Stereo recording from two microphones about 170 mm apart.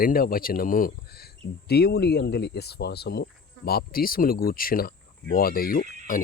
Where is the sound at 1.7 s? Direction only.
70° left (ahead or behind).